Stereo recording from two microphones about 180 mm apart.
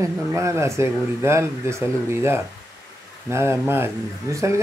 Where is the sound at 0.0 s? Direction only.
15° right (ahead or behind).